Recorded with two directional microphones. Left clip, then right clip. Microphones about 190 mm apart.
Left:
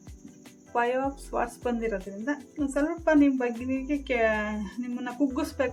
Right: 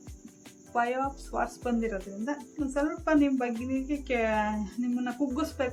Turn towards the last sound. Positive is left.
turn(degrees=45)  # may be behind; listen again after turning